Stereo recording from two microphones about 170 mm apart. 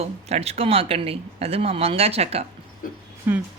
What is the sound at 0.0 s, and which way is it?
Speech, 35° right (ahead or behind).